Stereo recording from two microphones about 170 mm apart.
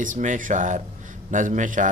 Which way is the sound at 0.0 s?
50° right (ahead or behind).